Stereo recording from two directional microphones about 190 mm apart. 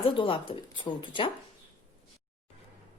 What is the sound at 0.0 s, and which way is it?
Speech, 25° left (ahead or behind).